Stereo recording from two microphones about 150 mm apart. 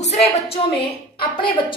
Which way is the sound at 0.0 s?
45° left (ahead or behind).